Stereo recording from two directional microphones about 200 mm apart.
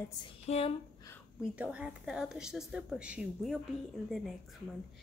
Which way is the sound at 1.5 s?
5° right (ahead or behind).